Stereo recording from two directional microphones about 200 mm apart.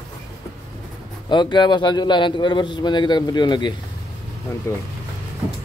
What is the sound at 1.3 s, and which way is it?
A man's voice, 25° left (ahead or behind).